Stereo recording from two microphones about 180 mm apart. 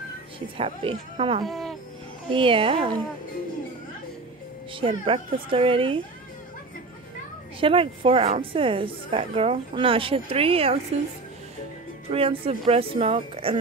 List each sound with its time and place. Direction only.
0.6 s speech: 30° right (ahead or behind)
1.4 s speech: centre (ahead or behind)
2.3 s a woman's voice: 30° right (ahead or behind)
4.7 s a woman's voice: 30° right (ahead or behind)
7.6 s a woman's voice: 30° right (ahead or behind)
12.1 s speech: 30° right (ahead or behind)